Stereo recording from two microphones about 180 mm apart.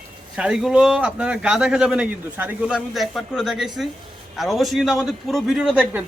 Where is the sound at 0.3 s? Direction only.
5° right (ahead or behind).